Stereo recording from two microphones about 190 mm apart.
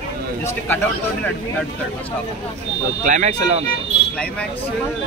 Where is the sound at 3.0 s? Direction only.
40° right (ahead or behind).